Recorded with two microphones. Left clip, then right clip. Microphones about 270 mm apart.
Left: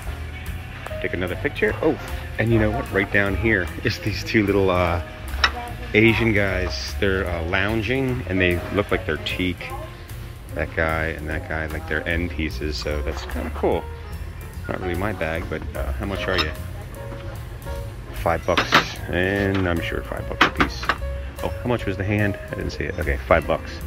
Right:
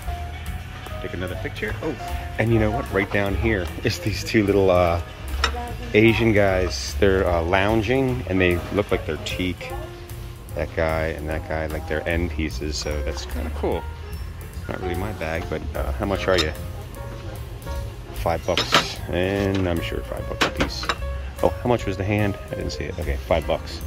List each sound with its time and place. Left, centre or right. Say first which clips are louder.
1.0 s speech: left 6 dB; centre
2.3 s speech: left 1 dB; centre
18.2 s speech: left 2 dB; centre
20.9 s music: left 2 dB; right
21.6 s speech: right 2 dB; centre